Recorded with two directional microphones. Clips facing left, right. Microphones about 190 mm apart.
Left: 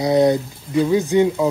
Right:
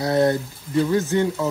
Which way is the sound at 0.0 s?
15° left (ahead or behind).